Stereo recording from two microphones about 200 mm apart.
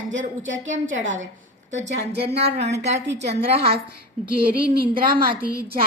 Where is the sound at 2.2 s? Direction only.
30° right (ahead or behind).